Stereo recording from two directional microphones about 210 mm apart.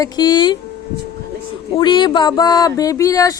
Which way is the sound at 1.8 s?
20° left (ahead or behind).